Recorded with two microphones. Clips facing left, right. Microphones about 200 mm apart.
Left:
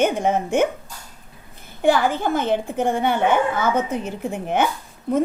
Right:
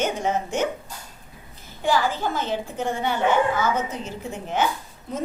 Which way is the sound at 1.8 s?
55° left (ahead or behind).